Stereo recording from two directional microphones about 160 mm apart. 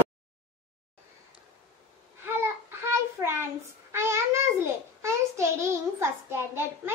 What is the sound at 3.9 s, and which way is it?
Child singing, 15° right (ahead or behind).